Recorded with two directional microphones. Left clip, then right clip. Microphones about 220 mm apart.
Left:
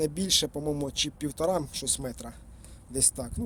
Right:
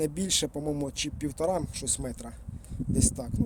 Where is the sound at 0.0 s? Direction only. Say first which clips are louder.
Left 2 dB; 10° right (ahead or behind).